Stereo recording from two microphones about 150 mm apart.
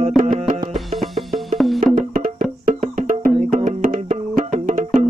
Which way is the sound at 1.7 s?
60° right (ahead or behind).